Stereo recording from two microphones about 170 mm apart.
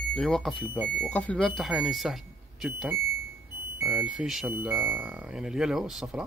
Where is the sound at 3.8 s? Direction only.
5° right (ahead or behind).